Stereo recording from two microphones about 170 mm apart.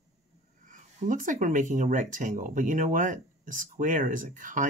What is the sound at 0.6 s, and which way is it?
Speech, 50° right (ahead or behind).